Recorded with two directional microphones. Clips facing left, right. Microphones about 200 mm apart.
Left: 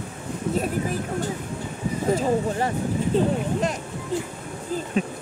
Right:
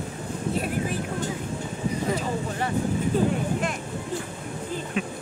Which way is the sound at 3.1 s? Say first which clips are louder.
Left 2 dB; 25° left (ahead or behind).